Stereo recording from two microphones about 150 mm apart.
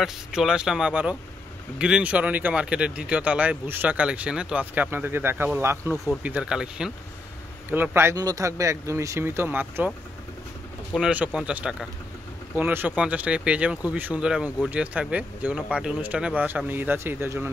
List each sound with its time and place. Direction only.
0.0 s speech: 5° right (ahead or behind)
11.1 s speech: 10° right (ahead or behind)